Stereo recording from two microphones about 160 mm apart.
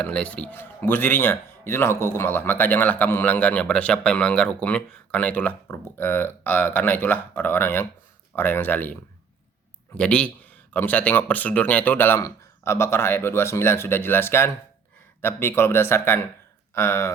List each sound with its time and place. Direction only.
0.0 s a man's voice: 10° left (ahead or behind)
10.0 s a man's voice: 10° left (ahead or behind)